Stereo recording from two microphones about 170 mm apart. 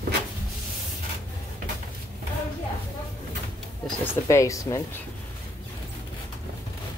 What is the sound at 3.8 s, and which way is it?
Speech, 10° left (ahead or behind).